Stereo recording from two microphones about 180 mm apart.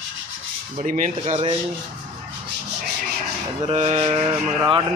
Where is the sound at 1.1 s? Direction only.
35° right (ahead or behind).